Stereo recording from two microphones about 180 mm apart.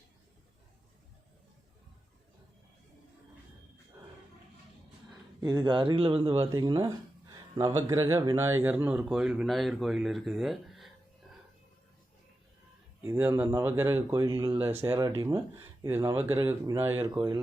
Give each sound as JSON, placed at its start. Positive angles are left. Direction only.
{"t": 5.4, "sound": "speech", "side_deg": -20}
{"t": 13.0, "sound": "speech", "side_deg": -10}